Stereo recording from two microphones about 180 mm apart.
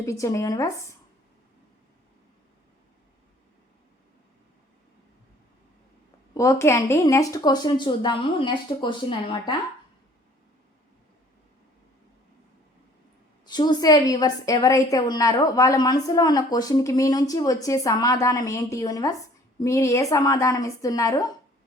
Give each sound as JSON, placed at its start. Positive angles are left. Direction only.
{"t": 0.0, "sound": "speech", "side_deg": 15}
{"t": 6.3, "sound": "a woman's voice", "side_deg": 15}
{"t": 13.4, "sound": "a woman's voice", "side_deg": 25}